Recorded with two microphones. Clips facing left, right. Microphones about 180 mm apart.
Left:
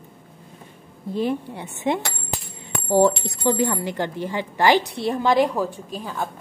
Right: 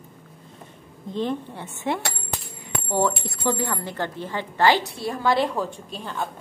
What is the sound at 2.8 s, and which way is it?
Speech, 35° left (ahead or behind).